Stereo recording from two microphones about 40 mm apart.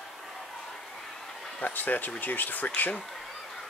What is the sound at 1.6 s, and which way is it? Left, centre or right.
Speech, left.